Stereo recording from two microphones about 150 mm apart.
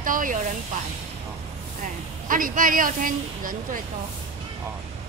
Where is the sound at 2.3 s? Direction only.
65° right (ahead or behind).